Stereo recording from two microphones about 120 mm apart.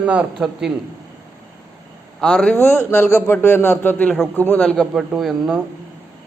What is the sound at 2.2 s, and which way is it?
Speech, 10° left (ahead or behind).